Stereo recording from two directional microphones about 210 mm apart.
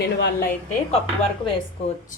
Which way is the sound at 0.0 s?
50° left (ahead or behind).